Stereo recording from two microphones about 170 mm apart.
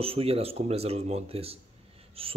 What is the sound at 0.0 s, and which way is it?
Speech, 35° right (ahead or behind).